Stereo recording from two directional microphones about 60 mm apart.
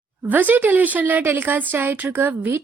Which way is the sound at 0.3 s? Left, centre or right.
Right.